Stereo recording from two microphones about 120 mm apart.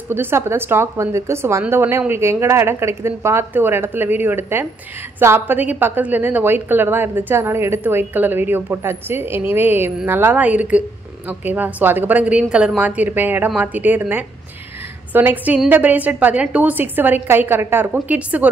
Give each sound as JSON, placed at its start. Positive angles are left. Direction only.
{"t": 0.1, "sound": "a woman's voice", "side_deg": -20}